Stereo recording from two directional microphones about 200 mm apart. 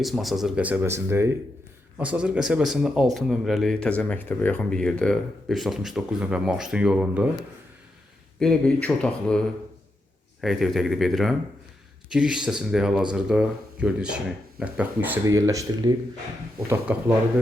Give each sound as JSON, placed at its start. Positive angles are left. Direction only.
{"t": 0.0, "sound": "speech", "side_deg": 0}
{"t": 8.4, "sound": "speech", "side_deg": 5}
{"t": 16.9, "sound": "speech", "side_deg": -5}